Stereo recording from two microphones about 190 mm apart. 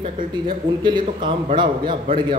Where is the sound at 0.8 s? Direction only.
25° right (ahead or behind).